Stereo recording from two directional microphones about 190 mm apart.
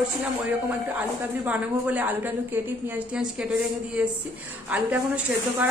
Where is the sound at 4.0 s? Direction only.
5° right (ahead or behind).